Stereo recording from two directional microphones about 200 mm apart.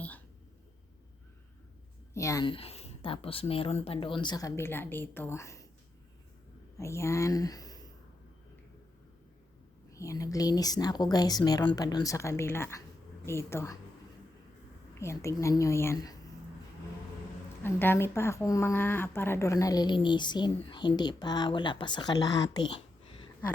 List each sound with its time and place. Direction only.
2.1 s a woman's voice: 15° left (ahead or behind)
6.7 s speech: 15° left (ahead or behind)
9.9 s a woman's voice: 15° left (ahead or behind)
14.9 s a woman's voice: 15° left (ahead or behind)
17.6 s a woman's voice: 10° left (ahead or behind)